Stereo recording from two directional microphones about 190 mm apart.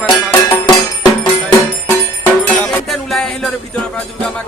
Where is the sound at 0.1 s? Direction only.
20° left (ahead or behind).